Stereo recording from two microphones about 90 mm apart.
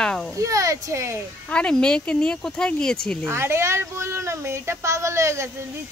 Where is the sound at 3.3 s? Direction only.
30° right (ahead or behind).